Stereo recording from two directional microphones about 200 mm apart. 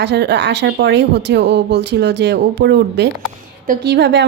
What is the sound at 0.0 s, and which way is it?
A woman's voice, 60° right (ahead or behind).